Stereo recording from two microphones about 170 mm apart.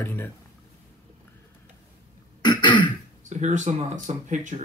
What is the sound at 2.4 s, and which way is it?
Throat clearing, 25° left (ahead or behind).